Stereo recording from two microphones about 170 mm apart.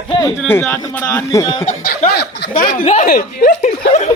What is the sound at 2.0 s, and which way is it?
Speech, 70° left (ahead or behind).